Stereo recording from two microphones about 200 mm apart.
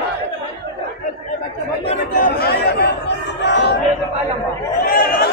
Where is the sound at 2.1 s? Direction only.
45° left (ahead or behind).